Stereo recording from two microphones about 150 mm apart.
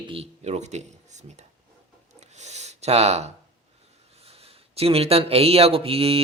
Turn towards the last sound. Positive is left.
turn(degrees=-40)  # may be behind; listen again after turning